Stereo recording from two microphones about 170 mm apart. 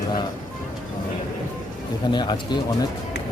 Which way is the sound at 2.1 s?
25° left (ahead or behind).